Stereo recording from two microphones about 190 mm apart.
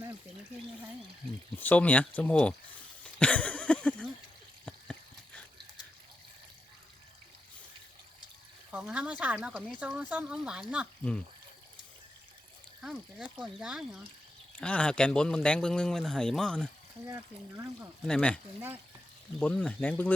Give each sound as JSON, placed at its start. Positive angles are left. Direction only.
{"t": 1.5, "sound": "speech", "side_deg": 10}
{"t": 3.0, "sound": "a sound", "side_deg": 5}
{"t": 8.7, "sound": "speech", "side_deg": -5}
{"t": 12.8, "sound": "speech", "side_deg": -5}
{"t": 17.1, "sound": "speech", "side_deg": -15}
{"t": 18.0, "sound": "speech", "side_deg": 5}
{"t": 19.4, "sound": "speech", "side_deg": 5}